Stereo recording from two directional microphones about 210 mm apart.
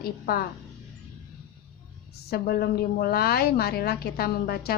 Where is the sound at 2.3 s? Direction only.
45° left (ahead or behind).